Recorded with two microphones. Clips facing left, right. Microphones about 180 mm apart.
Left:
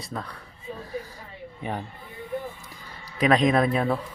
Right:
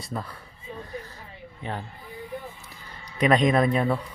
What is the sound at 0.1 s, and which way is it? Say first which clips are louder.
Speech: right 1 dB; 5° right (ahead or behind).